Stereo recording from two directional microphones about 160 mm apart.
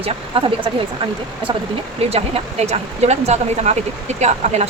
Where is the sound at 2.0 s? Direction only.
40° right (ahead or behind).